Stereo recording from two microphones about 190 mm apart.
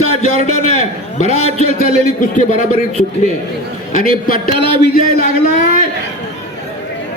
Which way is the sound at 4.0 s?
50° left (ahead or behind).